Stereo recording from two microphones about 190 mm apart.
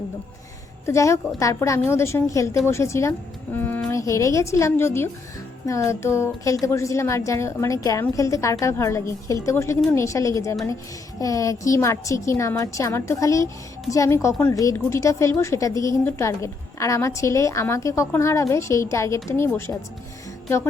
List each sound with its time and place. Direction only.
0.9 s a woman's voice: 15° left (ahead or behind)